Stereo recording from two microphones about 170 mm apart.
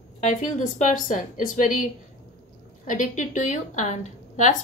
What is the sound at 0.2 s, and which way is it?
A woman's voice, 45° left (ahead or behind).